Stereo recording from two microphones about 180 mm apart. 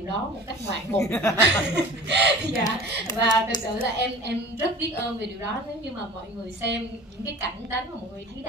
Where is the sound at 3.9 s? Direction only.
75° right (ahead or behind).